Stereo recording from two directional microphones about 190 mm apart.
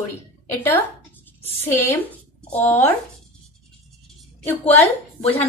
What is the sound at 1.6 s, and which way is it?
Speech, 10° left (ahead or behind).